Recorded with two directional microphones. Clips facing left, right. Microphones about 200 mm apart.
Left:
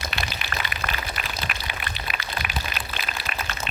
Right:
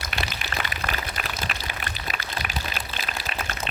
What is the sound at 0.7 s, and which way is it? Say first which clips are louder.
Pour: even; 35° right (ahead or behind).